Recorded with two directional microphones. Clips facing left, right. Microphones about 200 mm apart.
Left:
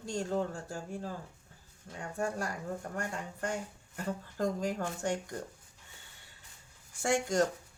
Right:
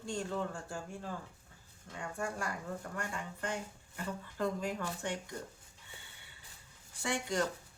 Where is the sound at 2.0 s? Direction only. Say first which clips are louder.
Left 4 dB; 40° left (ahead or behind).